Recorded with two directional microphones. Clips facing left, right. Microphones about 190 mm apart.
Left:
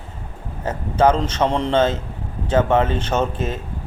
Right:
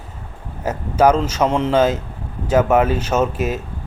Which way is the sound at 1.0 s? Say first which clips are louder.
Right 2 dB; 10° right (ahead or behind).